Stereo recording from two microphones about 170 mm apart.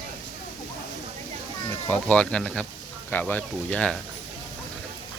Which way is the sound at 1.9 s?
10° left (ahead or behind).